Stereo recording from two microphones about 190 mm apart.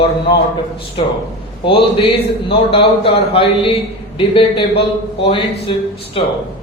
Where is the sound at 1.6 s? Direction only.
30° left (ahead or behind).